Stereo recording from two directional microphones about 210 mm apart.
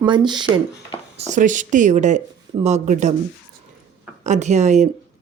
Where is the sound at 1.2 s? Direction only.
35° right (ahead or behind).